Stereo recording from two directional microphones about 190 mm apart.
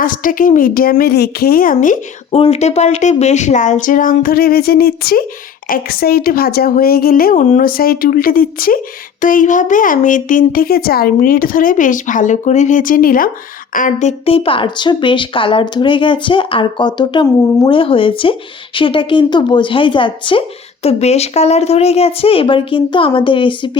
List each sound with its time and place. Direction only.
0.0 s speech: 45° left (ahead or behind); by 23.7 s 25° left (ahead or behind)